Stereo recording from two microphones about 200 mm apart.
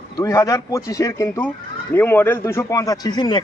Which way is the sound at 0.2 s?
15° left (ahead or behind).